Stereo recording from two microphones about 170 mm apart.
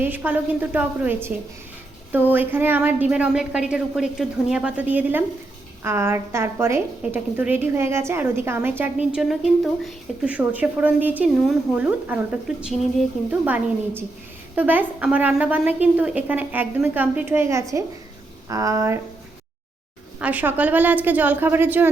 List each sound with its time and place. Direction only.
0.0 s a woman's voice: 10° right (ahead or behind)
13.4 s a woman's voice: 10° right (ahead or behind)
20.1 s a woman's voice: 10° right (ahead or behind)